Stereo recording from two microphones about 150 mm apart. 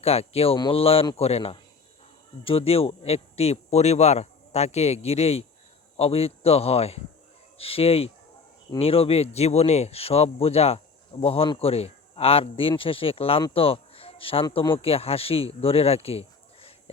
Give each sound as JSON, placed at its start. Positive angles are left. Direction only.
{"t": 0.0, "sound": "speech", "side_deg": 40}
{"t": 13.5, "sound": "a sound", "side_deg": 40}
{"t": 14.8, "sound": "speech", "side_deg": 40}